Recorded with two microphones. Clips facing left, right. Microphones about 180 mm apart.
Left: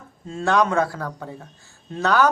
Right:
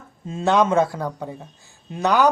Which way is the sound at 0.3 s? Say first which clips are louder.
Right 2 dB; 20° right (ahead or behind).